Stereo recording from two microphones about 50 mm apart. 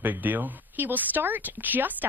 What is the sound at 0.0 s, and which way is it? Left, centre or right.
Speech, right.